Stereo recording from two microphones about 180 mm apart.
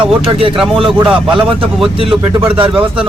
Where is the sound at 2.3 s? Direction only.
30° right (ahead or behind).